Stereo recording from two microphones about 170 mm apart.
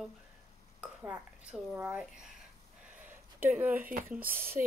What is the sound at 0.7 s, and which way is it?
Speech, 10° right (ahead or behind).